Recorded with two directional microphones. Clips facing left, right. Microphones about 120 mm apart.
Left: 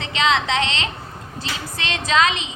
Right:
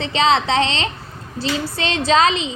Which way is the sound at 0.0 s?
35° right (ahead or behind).